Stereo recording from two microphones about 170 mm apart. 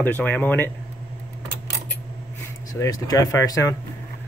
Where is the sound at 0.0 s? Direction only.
10° left (ahead or behind).